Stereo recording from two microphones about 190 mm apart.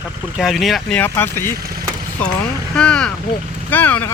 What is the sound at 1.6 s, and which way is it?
Speech, 50° right (ahead or behind).